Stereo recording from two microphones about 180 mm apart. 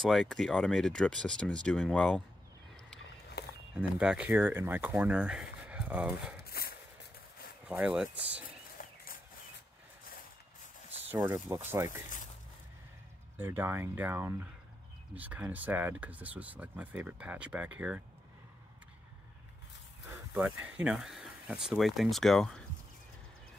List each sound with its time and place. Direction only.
0.0 s speech: centre (ahead or behind)
3.4 s walk: 65° left (ahead or behind)
3.7 s speech: 5° right (ahead or behind)
6.4 s a sound: 60° left (ahead or behind)
7.6 s speech: 5° right (ahead or behind)
8.8 s a sound: 50° left (ahead or behind)
11.1 s speech: 15° right (ahead or behind)
13.4 s speech: 10° right (ahead or behind)
20.6 s speech: 5° right (ahead or behind)